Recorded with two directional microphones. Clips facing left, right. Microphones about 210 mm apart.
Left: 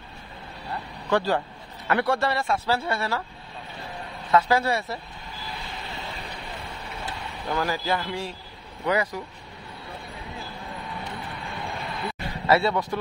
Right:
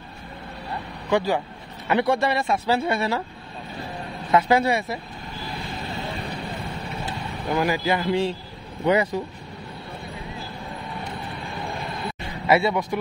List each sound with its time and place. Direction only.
1.1 s a man's voice: 15° right (ahead or behind)
4.3 s a man's voice: 20° right (ahead or behind)
7.4 s a man's voice: 15° right (ahead or behind)
12.4 s a man's voice: 15° right (ahead or behind)